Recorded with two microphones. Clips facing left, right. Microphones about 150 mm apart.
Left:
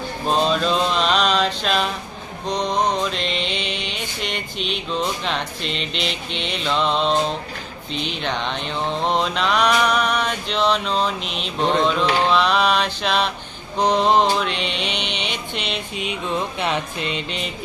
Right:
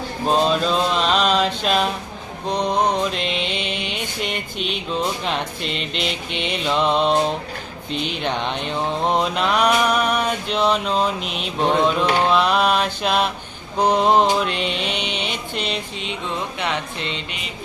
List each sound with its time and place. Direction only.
0.3 s mantra: 5° right (ahead or behind)
3.5 s mantra: 50° right (ahead or behind)
5.2 s music: 5° right (ahead or behind)
6.1 s mantra: 50° right (ahead or behind)
6.7 s mantra: 10° right (ahead or behind)
7.9 s mantra: 50° right (ahead or behind)
8.3 s mantra: 10° right (ahead or behind)
11.2 s mantra: 50° right (ahead or behind)
11.6 s mantra: 10° right (ahead or behind)
14.5 s mantra: 45° right (ahead or behind)
16.6 s music: 20° left (ahead or behind)
17.0 s mantra: 25° right (ahead or behind)